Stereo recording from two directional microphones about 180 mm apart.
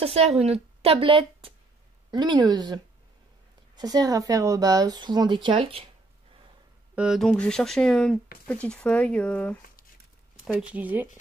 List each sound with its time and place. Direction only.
0.0 s a woman's voice: 35° right (ahead or behind)
7.0 s speech: centre (ahead or behind)
10.4 s speech: 5° right (ahead or behind)